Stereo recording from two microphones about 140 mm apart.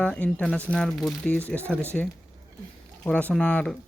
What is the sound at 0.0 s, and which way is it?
Speech, 10° left (ahead or behind).